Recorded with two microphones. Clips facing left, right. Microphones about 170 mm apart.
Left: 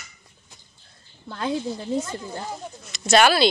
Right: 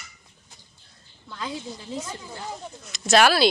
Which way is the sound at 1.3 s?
55° left (ahead or behind).